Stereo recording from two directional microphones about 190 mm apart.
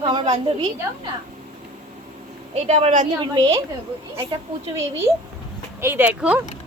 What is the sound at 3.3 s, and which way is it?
Speech, 20° right (ahead or behind).